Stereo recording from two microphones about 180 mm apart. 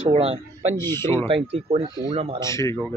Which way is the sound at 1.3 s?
30° right (ahead or behind).